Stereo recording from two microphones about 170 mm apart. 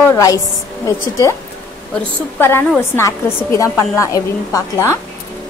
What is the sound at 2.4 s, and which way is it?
A woman's voice, 15° left (ahead or behind).